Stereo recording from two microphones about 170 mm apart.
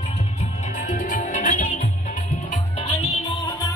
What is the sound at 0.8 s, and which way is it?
Music, 45° left (ahead or behind).